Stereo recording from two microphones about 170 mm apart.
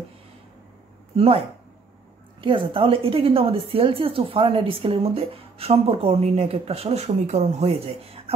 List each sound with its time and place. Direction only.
1.1 s speech: 35° right (ahead or behind)
2.4 s a woman's voice: 30° right (ahead or behind)